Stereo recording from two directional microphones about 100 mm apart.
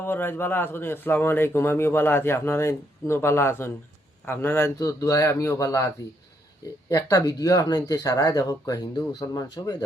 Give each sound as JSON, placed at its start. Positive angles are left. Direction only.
{"t": 0.0, "sound": "a man's voice", "side_deg": 20}
{"t": 6.9, "sound": "speech", "side_deg": 40}